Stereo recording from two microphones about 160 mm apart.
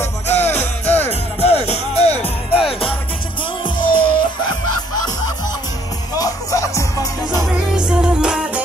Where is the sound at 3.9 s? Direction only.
30° left (ahead or behind).